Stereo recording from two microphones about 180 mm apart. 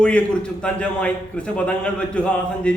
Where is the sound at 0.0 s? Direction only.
5° left (ahead or behind).